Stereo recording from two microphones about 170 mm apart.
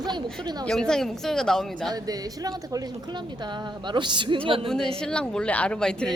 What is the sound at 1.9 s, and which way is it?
A woman's voice, 20° right (ahead or behind).